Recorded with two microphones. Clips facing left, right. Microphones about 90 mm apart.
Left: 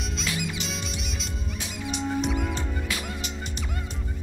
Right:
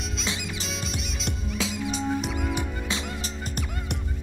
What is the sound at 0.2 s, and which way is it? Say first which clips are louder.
Music: left 3 dB; 35° right (ahead or behind).